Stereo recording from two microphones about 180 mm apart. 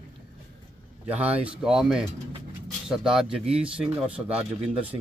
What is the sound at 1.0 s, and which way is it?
Speech, 10° right (ahead or behind).